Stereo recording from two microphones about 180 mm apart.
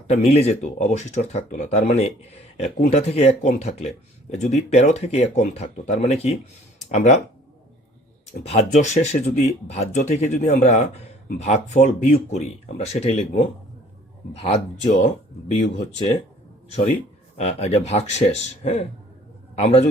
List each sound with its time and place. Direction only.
0.1 s speech: 35° left (ahead or behind)
6.7 s a sound: 40° left (ahead or behind)
8.4 s speech: 40° left (ahead or behind)
15.5 s speech: 40° left (ahead or behind)